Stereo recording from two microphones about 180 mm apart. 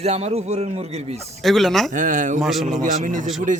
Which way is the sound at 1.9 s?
45° right (ahead or behind).